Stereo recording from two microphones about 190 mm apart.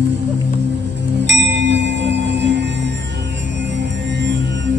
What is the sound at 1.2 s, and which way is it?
Tubular bells, 70° right (ahead or behind).